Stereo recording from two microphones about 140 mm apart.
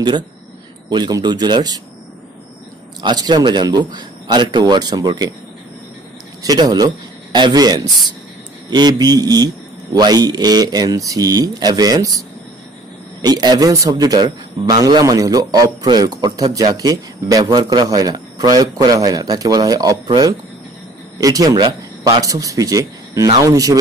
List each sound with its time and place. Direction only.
0.8 s speech: 30° right (ahead or behind)
3.0 s speech: 30° right (ahead or behind)
6.4 s a man's voice: 30° right (ahead or behind)